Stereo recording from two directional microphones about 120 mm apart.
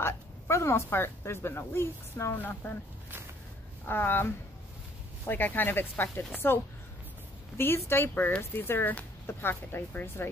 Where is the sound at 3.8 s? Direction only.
20° left (ahead or behind).